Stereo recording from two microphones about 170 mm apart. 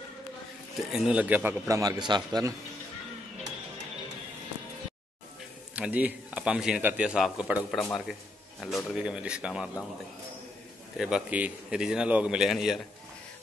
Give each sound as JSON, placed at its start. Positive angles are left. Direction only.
{"t": 0.9, "sound": "a man's voice", "side_deg": -5}
{"t": 5.8, "sound": "a man's voice", "side_deg": -10}
{"t": 11.0, "sound": "a man's voice", "side_deg": -5}